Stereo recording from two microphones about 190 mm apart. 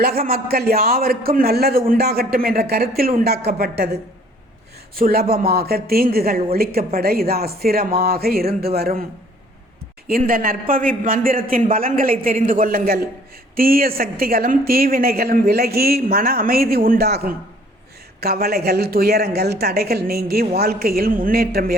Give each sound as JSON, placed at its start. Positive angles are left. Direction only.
{"t": 0.0, "sound": "a man's voice", "side_deg": -55}
{"t": 4.9, "sound": "a man's voice", "side_deg": -50}
{"t": 10.1, "sound": "a man's voice", "side_deg": -50}